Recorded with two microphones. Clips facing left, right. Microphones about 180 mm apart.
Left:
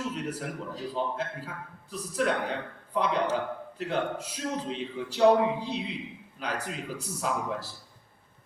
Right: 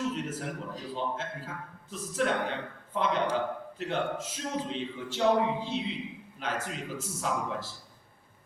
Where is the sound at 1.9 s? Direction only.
40° left (ahead or behind).